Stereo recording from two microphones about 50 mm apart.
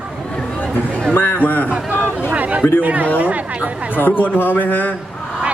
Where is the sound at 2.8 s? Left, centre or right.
Right.